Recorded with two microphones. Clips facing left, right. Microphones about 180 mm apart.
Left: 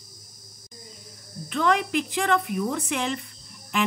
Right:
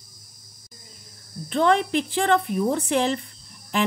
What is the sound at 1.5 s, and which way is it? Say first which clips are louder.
Speech: right 3 dB; 30° right (ahead or behind).